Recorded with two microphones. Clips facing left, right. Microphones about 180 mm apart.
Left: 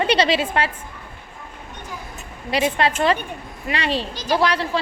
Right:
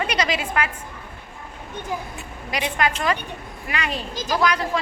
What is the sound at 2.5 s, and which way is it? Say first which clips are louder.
A woman's voice: left 4 dB; 30° left (ahead or behind).